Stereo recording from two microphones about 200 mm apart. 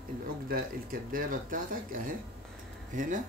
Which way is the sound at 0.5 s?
45° right (ahead or behind).